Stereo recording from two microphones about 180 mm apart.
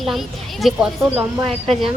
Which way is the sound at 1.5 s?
35° right (ahead or behind).